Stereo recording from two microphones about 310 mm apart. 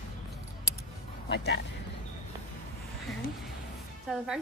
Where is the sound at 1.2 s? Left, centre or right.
Left.